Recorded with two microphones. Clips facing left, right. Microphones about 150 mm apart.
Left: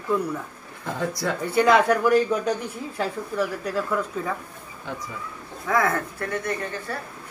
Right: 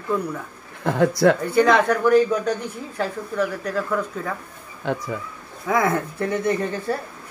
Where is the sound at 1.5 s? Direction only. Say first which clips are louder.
Right 1 dB; 5° left (ahead or behind).